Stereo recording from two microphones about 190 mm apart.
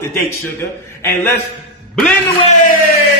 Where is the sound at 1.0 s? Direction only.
10° left (ahead or behind).